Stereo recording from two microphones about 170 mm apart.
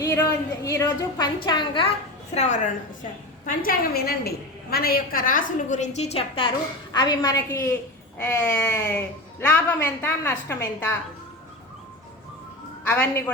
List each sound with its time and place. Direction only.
0.0 s a woman's voice: 20° left (ahead or behind)
2.3 s a woman's voice: 40° left (ahead or behind)
3.0 s a woman's voice: 50° left (ahead or behind); by 10.6 s 15° left (ahead or behind)
12.9 s speech: 10° left (ahead or behind)